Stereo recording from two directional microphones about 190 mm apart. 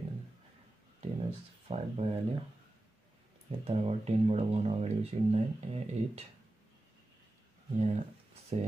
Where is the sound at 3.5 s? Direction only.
30° right (ahead or behind).